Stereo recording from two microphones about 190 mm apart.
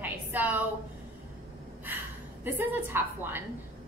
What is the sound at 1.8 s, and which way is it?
A woman's voice, 10° right (ahead or behind).